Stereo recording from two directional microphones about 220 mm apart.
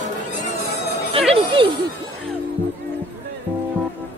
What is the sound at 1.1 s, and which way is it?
Speech, 25° right (ahead or behind).